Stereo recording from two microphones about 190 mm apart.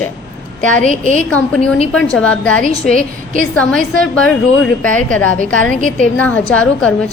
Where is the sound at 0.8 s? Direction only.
45° right (ahead or behind).